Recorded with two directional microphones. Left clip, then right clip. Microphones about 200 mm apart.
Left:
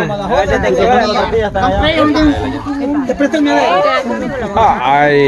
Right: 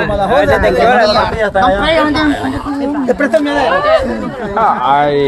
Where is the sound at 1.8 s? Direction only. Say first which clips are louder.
Even; 25° right (ahead or behind).